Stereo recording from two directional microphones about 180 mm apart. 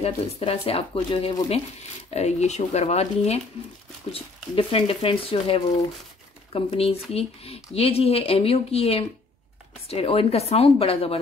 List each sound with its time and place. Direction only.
0.0 s speech: 35° left (ahead or behind)